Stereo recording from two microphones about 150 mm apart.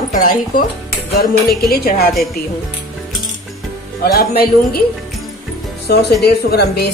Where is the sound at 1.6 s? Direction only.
90° left.